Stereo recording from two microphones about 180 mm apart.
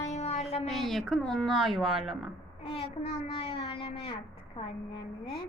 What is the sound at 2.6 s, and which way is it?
Speech, 35° left (ahead or behind).